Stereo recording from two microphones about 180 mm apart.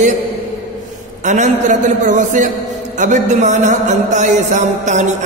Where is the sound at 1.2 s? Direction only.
40° right (ahead or behind).